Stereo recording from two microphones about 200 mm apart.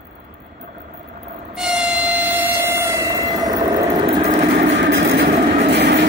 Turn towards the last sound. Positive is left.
turn(degrees=-60)  # may be behind; listen again after turning